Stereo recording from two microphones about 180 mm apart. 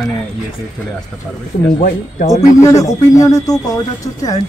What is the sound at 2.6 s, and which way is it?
Speech, 20° left (ahead or behind).